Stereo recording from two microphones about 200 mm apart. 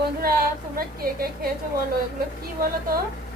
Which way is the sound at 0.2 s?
50° right (ahead or behind).